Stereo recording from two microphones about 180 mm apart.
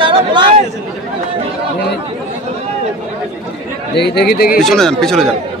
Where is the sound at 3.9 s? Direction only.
65° left (ahead or behind).